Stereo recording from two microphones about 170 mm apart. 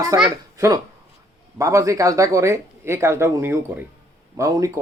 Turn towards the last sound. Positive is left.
turn(degrees=-20)  # may be behind; listen again after turning